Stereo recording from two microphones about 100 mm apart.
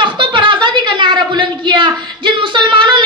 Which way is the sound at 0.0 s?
55° right (ahead or behind).